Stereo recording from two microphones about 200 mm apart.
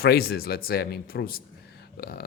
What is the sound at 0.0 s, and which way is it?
Speech, 50° left (ahead or behind).